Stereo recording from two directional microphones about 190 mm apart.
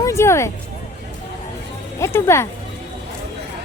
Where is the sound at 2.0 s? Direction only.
15° left (ahead or behind).